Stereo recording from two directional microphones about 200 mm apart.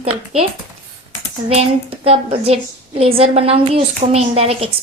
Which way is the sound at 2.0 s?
30° right (ahead or behind).